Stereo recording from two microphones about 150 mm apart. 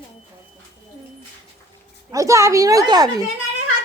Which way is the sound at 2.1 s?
20° right (ahead or behind).